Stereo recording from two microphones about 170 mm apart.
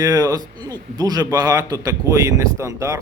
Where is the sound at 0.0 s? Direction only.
20° right (ahead or behind).